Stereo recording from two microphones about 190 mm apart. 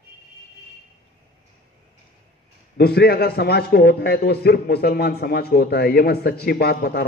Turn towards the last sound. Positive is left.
turn(degrees=55)  # may be behind; listen again after turning